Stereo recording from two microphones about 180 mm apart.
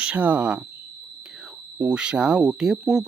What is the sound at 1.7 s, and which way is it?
Speech, 5° right (ahead or behind).